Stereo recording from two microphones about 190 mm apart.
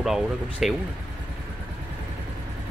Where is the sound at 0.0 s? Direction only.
Centre (ahead or behind).